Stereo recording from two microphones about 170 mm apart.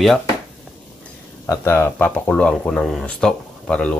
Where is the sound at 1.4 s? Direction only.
15° left (ahead or behind).